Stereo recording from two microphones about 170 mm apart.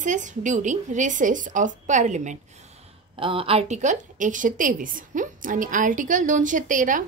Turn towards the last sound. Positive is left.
turn(degrees=-50)  # may be behind; listen again after turning